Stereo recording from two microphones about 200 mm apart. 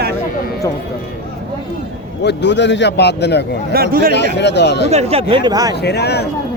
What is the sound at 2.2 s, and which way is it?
A man's voice, 60° left (ahead or behind).